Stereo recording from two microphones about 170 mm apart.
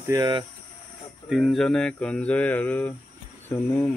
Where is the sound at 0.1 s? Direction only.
25° right (ahead or behind).